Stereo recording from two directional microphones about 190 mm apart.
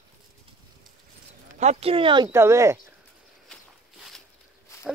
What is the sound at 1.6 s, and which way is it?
Speech, 35° right (ahead or behind).